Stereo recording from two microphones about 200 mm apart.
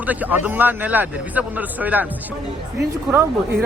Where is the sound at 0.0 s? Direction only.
10° right (ahead or behind).